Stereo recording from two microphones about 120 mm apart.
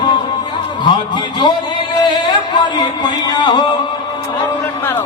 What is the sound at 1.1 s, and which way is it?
Speech, 40° left (ahead or behind).